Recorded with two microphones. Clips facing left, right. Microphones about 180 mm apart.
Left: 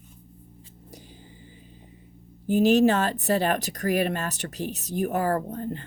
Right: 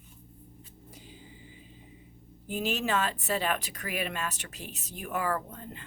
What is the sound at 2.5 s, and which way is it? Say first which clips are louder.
Speech: left 11 dB; 40° left (ahead or behind).